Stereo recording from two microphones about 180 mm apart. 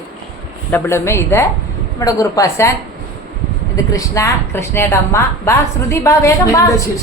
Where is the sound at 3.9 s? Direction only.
20° left (ahead or behind).